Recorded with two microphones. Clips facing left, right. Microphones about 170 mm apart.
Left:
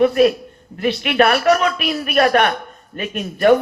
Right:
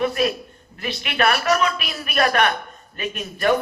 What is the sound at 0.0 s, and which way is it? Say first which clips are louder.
A woman's voice: left 8 dB; 45° left (ahead or behind).